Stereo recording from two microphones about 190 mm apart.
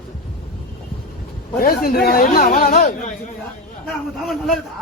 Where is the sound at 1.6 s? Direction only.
50° left (ahead or behind).